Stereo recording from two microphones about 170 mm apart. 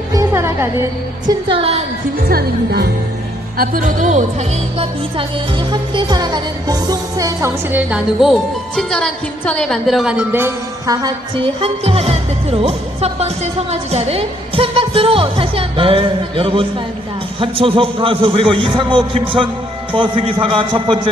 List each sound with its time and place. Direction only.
0.1 s music: 15° right (ahead or behind)
1.5 s a woman's voice: 35° right (ahead or behind)
2.1 s a woman's voice: 65° right (ahead or behind)
3.5 s speech: 55° right (ahead or behind); by 7.8 s 20° right (ahead or behind)
7.9 s a woman's voice: centre (ahead or behind); by 21.1 s 30° right (ahead or behind)